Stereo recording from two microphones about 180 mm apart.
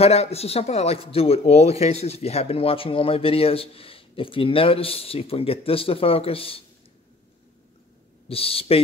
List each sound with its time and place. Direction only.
0.0 s speech: 35° left (ahead or behind)
8.3 s speech: 30° left (ahead or behind)